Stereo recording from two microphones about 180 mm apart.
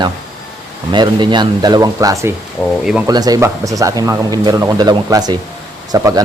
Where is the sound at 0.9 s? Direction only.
25° right (ahead or behind).